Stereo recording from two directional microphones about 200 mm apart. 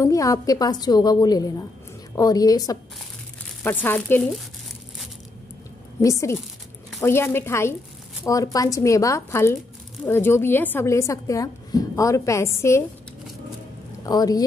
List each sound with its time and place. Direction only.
0.0 s a woman's voice: 15° left (ahead or behind)
5.9 s a woman's voice: 15° left (ahead or behind)
14.0 s a woman's voice: 20° left (ahead or behind)